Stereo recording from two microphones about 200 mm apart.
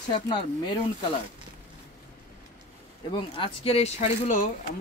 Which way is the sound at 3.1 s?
25° left (ahead or behind).